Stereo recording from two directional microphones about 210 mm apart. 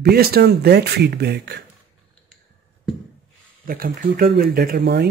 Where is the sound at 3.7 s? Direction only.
45° right (ahead or behind).